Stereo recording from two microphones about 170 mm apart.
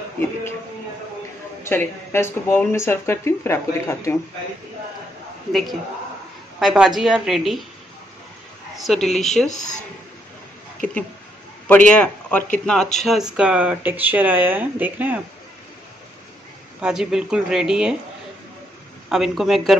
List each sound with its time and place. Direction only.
1.6 s speech: 15° left (ahead or behind)
5.5 s speech: centre (ahead or behind)
8.7 s speech: centre (ahead or behind)
9.5 s speech: 45° left (ahead or behind)
11.6 s a man's voice: 10° left (ahead or behind); by 15.2 s 10° right (ahead or behind)
16.8 s speech: 5° right (ahead or behind)
19.0 s speech: centre (ahead or behind)